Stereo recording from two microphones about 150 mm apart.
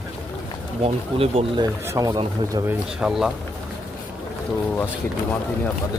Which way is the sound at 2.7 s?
5° right (ahead or behind).